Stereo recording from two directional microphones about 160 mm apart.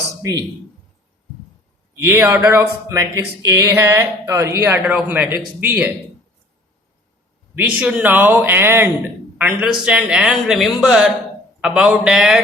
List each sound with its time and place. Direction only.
0.2 s speech: 20° right (ahead or behind)
2.0 s speech: 15° right (ahead or behind)
7.5 s a man's voice: 10° right (ahead or behind)